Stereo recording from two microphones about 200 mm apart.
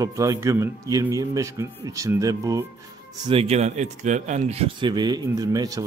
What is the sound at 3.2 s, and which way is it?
Speech, 30° right (ahead or behind).